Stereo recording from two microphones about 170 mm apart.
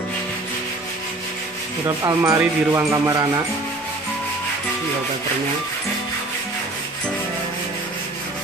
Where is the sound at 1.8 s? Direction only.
20° right (ahead or behind).